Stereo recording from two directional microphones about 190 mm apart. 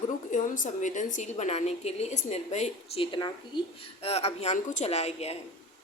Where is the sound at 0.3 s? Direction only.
40° left (ahead or behind).